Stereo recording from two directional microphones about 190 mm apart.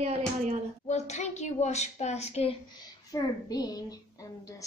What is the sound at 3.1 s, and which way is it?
Speech, 20° left (ahead or behind).